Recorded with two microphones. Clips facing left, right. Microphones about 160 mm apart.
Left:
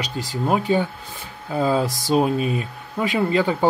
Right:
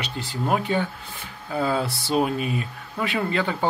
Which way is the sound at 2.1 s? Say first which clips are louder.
Left 4 dB; 25° left (ahead or behind).